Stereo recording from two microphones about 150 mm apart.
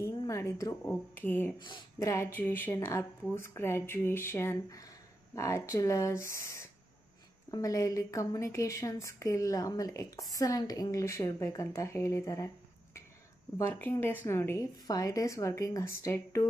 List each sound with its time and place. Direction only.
0.0 s a sound: 20° left (ahead or behind)
0.8 s speech: 10° left (ahead or behind)
1.6 s speech: 25° left (ahead or behind)
13.6 s speech: 15° left (ahead or behind)